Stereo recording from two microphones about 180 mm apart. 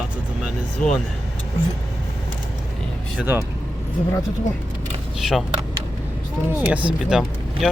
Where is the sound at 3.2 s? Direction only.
10° right (ahead or behind).